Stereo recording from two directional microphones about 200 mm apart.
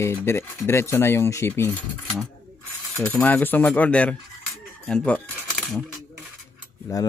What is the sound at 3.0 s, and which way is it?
Speech, 5° left (ahead or behind).